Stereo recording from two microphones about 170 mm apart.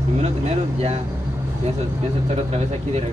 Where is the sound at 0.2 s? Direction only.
40° right (ahead or behind).